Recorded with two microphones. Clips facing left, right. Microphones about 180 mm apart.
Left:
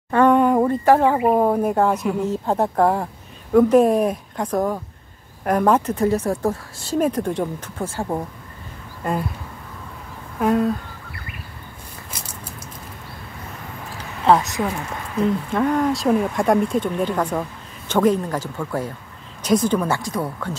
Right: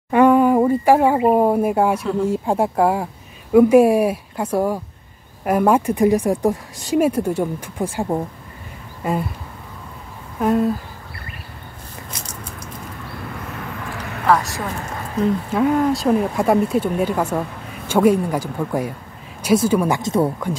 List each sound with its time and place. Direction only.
0.1 s speech: 10° right (ahead or behind)
9.0 s speech: centre (ahead or behind)
10.4 s speech: centre (ahead or behind)
14.2 s a woman's voice: 20° left (ahead or behind)
15.5 s speech: 5° right (ahead or behind)
20.0 s speech: 25° right (ahead or behind)